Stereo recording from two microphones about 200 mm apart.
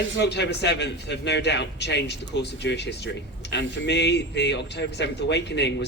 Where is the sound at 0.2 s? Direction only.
60° left (ahead or behind).